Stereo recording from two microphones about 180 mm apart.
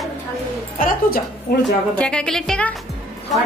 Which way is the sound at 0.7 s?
50° left (ahead or behind).